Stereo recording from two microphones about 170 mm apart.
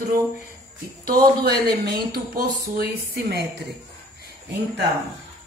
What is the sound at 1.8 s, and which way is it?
Speech, 65° right (ahead or behind).